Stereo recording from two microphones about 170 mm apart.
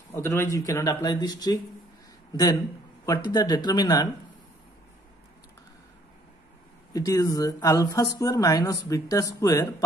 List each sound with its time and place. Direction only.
0.1 s speech: 15° left (ahead or behind)
3.1 s speech: 25° left (ahead or behind)
6.9 s speech: 20° left (ahead or behind)